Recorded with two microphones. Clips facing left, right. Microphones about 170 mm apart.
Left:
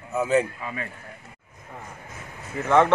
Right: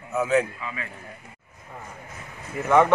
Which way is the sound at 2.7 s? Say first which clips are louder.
Even; 10° right (ahead or behind).